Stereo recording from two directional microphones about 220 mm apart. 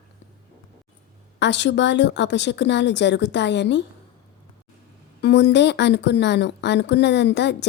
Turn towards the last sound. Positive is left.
turn(degrees=50)  # may be behind; listen again after turning